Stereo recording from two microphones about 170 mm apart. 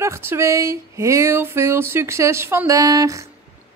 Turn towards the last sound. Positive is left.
turn(degrees=-20)  # may be behind; listen again after turning